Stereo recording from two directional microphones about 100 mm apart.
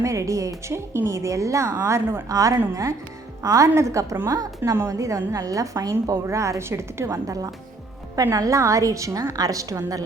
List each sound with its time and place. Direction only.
0.0 s a woman's voice: 30° right (ahead or behind)